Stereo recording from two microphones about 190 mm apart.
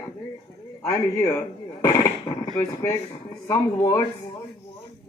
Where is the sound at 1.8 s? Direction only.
20° left (ahead or behind).